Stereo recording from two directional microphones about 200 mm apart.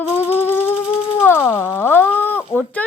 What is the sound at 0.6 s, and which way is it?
Music, 30° left (ahead or behind).